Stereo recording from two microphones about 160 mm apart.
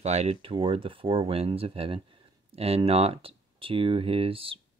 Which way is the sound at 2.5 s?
40° right (ahead or behind).